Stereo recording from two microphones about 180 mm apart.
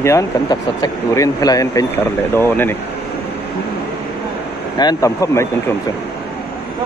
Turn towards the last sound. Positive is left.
turn(degrees=15)  # may be behind; listen again after turning